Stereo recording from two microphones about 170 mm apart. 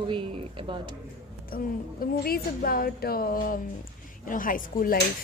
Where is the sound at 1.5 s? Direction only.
60° left (ahead or behind).